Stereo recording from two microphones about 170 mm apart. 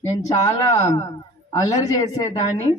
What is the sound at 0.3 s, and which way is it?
A woman's voice, 20° left (ahead or behind).